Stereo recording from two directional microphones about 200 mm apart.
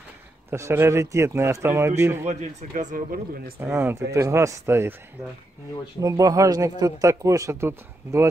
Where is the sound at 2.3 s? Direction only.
35° right (ahead or behind).